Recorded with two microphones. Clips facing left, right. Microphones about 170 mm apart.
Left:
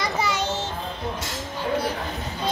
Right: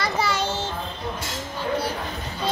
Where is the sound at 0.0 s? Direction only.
15° left (ahead or behind).